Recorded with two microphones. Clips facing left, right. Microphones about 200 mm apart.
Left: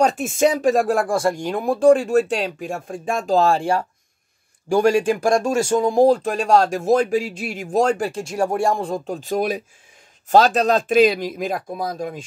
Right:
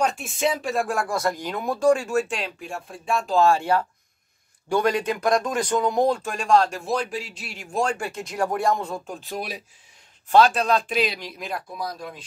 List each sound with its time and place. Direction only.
0.0 s speech: 45° left (ahead or behind)